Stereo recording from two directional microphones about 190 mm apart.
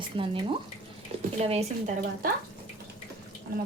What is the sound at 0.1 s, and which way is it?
Speech, 30° right (ahead or behind).